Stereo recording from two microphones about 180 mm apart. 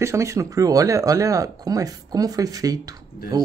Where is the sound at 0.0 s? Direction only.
15° right (ahead or behind).